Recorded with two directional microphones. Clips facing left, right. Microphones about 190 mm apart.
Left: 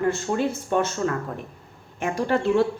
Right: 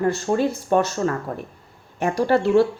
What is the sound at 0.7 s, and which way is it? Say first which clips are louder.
A woman's voice: right 4 dB; 35° right (ahead or behind).